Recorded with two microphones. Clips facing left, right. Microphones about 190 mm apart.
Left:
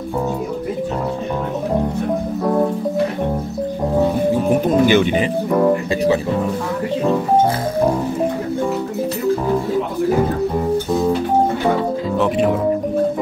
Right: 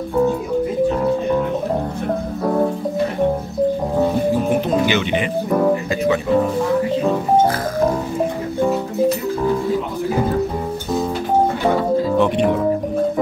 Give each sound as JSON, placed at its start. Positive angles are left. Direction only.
{"t": 4.6, "sound": "speech", "side_deg": 50}
{"t": 12.2, "sound": "speech", "side_deg": 0}